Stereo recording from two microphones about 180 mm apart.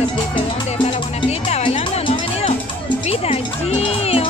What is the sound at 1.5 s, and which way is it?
Music, 35° left (ahead or behind).